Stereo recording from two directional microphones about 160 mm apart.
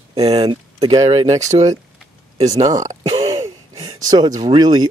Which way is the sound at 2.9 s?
30° right (ahead or behind).